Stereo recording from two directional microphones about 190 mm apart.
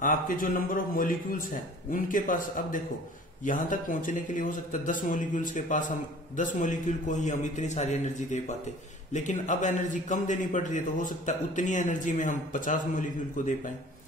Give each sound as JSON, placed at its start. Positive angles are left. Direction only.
{"t": 0.0, "sound": "a man's voice", "side_deg": 45}